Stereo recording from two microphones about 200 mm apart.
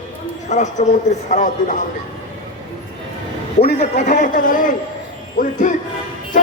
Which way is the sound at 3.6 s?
35° left (ahead or behind).